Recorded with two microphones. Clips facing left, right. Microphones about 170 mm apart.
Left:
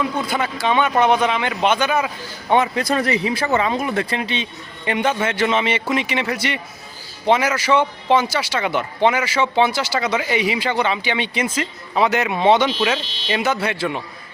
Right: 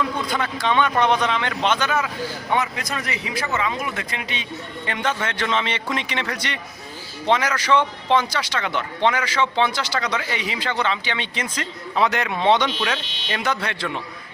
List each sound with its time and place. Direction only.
0.0 s a man's voice: 10° left (ahead or behind)
2.5 s speech: 30° left (ahead or behind)
4.9 s a man's voice: 10° left (ahead or behind)
13.0 s speech: 30° left (ahead or behind)
13.2 s a man's voice: 5° left (ahead or behind)